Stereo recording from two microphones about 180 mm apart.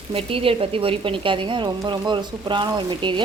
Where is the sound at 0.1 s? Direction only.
30° right (ahead or behind).